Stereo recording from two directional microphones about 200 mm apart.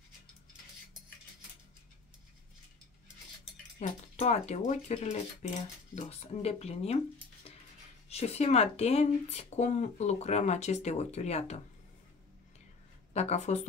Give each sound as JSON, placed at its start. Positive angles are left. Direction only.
{"t": 3.8, "sound": "speech", "side_deg": 35}
{"t": 8.1, "sound": "speech", "side_deg": 30}
{"t": 13.1, "sound": "speech", "side_deg": 35}